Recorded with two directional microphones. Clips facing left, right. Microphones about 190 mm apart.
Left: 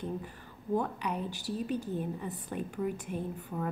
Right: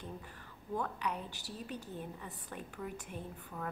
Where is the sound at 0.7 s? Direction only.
15° left (ahead or behind).